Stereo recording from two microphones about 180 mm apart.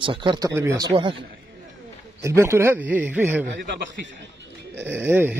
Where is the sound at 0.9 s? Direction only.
30° right (ahead or behind).